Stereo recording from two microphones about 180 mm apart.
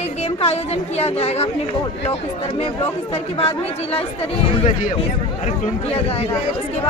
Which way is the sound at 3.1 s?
35° left (ahead or behind).